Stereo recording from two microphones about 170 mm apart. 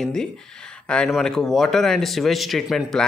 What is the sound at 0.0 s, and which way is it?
Speech, 5° left (ahead or behind).